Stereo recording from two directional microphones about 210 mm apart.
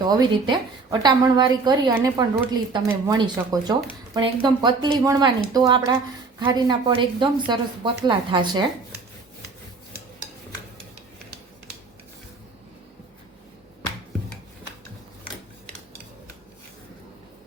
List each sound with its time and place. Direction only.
0.0 s a woman's voice: 20° right (ahead or behind)